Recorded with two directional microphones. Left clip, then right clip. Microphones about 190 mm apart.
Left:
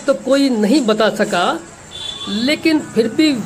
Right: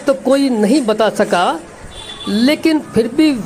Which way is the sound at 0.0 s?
20° right (ahead or behind).